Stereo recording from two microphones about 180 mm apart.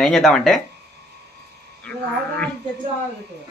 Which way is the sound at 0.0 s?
5° left (ahead or behind).